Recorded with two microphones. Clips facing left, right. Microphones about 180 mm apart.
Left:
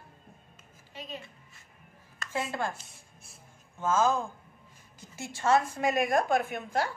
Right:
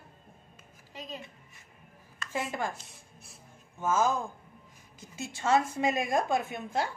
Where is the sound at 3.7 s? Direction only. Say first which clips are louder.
Left 1 dB; 15° right (ahead or behind).